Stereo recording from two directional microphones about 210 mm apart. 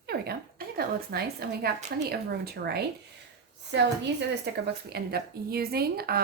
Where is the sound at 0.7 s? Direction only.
50° right (ahead or behind).